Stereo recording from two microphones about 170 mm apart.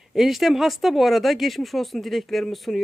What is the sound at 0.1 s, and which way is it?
Speech, centre (ahead or behind).